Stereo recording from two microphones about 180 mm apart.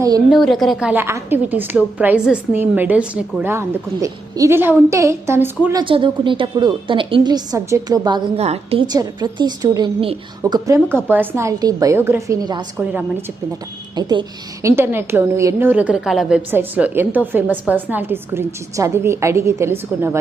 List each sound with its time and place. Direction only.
0.3 s a woman's voice: centre (ahead or behind)
5.8 s a woman's voice: 30° right (ahead or behind)
8.4 s a woman's voice: 35° right (ahead or behind)
8.9 s a woman's voice: 20° right (ahead or behind)
12.7 s a woman's voice: 10° right (ahead or behind)
13.9 s a woman's voice: 25° right (ahead or behind)